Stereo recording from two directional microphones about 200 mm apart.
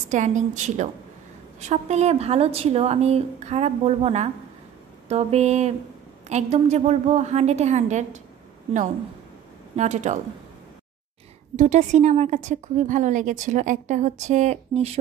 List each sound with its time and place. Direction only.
0.1 s speech: 40° right (ahead or behind)
9.8 s speech: 35° right (ahead or behind)
11.5 s speech: 35° right (ahead or behind)